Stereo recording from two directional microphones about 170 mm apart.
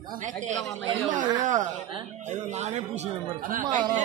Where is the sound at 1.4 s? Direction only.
50° right (ahead or behind).